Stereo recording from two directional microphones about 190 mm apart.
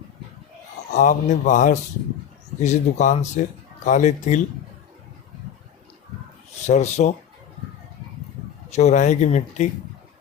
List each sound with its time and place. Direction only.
0.9 s speech: 40° left (ahead or behind)
6.7 s speech: 35° left (ahead or behind)
8.7 s speech: 35° left (ahead or behind)